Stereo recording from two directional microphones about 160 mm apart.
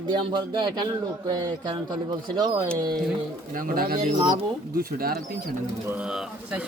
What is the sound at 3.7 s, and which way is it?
Speech, 65° right (ahead or behind).